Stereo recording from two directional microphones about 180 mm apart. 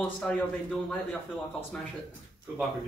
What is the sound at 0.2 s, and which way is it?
Speech, 5° left (ahead or behind).